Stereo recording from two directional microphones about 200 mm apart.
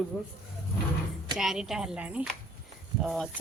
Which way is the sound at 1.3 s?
Centre (ahead or behind).